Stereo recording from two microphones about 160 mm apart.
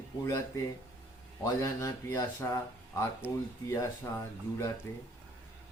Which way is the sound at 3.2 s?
10° right (ahead or behind).